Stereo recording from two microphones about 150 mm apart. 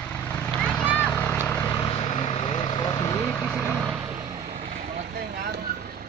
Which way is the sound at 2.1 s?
40° left (ahead or behind).